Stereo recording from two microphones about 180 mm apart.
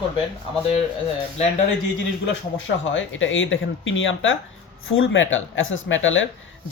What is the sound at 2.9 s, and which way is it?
Speech, 90° left.